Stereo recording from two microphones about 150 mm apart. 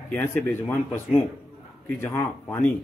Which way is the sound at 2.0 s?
15° left (ahead or behind).